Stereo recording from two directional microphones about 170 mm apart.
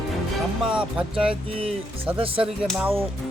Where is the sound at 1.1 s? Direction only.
30° right (ahead or behind).